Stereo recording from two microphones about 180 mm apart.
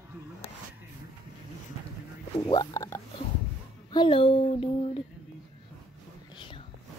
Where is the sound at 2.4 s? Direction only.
20° left (ahead or behind).